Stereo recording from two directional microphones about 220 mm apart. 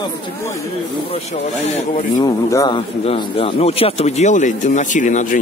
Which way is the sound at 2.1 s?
20° left (ahead or behind).